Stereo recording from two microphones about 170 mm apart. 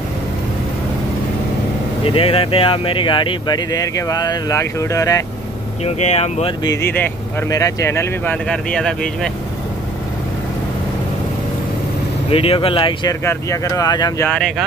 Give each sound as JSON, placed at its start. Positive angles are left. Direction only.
{"t": 2.0, "sound": "speech", "side_deg": 35}
{"t": 5.9, "sound": "speech", "side_deg": 40}
{"t": 6.6, "sound": "speech", "side_deg": 20}
{"t": 8.5, "sound": "speech", "side_deg": 5}
{"t": 12.3, "sound": "speech", "side_deg": 35}
{"t": 13.2, "sound": "speech", "side_deg": 15}
{"t": 14.2, "sound": "speech", "side_deg": 5}